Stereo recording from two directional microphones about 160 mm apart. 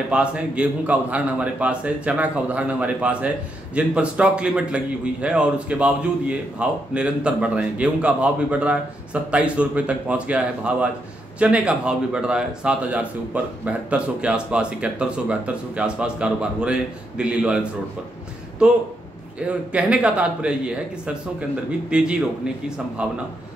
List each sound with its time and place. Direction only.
0.1 s speech: 5° right (ahead or behind)
18.6 s speech: 5° right (ahead or behind)